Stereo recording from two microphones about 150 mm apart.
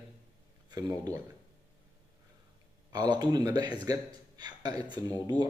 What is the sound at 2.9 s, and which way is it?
A man's voice, 30° right (ahead or behind).